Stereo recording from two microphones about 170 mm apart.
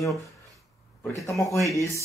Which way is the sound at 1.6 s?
15° left (ahead or behind).